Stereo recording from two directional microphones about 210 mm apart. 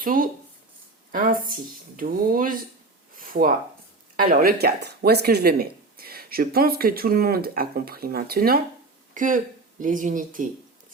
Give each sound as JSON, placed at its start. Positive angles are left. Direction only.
{"t": 0.0, "sound": "speech", "side_deg": -40}
{"t": 3.2, "sound": "a sound", "side_deg": -40}
{"t": 4.2, "sound": "speech", "side_deg": -40}